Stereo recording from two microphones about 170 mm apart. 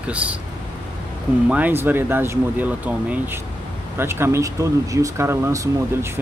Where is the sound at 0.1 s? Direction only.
10° right (ahead or behind).